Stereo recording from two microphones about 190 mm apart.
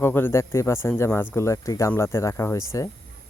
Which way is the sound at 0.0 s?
10° left (ahead or behind).